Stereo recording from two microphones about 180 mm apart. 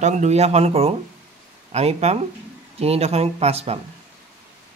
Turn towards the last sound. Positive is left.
turn(degrees=-35)  # may be behind; listen again after turning